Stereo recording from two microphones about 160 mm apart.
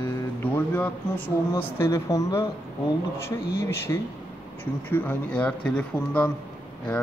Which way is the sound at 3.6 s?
15° left (ahead or behind).